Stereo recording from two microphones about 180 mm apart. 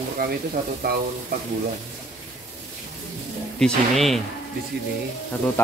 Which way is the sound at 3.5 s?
Centre (ahead or behind).